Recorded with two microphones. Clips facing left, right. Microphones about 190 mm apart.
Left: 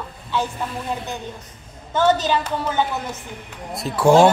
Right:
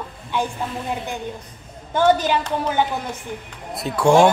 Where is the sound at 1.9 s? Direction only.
10° right (ahead or behind).